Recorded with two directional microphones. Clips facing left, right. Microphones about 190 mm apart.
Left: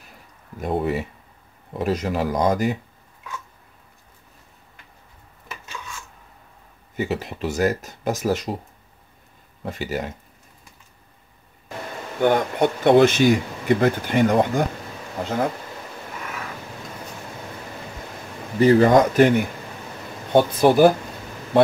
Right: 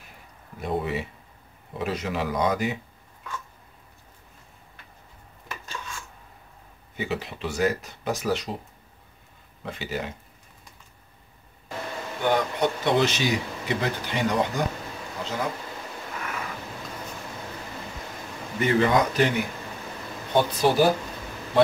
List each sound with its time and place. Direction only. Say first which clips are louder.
0.6 s speech: left 4 dB; 45° left (ahead or behind)
7.0 s speech: left 5 dB; 45° left (ahead or behind)
9.7 s speech: left 4 dB; 45° left (ahead or behind)
12.2 s speech: left 5 dB; 50° left (ahead or behind)
18.6 s speech: left 7 dB; 40° left (ahead or behind)